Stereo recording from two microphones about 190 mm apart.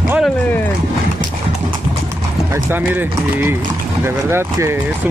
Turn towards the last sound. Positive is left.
turn(degrees=-15)  # may be behind; listen again after turning